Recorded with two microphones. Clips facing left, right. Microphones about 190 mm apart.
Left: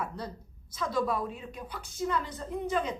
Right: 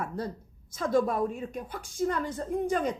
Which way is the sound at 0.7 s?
50° right (ahead or behind).